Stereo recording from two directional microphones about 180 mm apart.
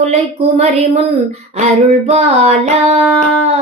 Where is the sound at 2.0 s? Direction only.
35° right (ahead or behind).